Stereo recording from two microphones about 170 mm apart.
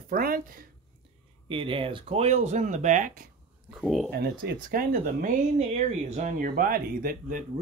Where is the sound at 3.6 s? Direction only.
5° right (ahead or behind).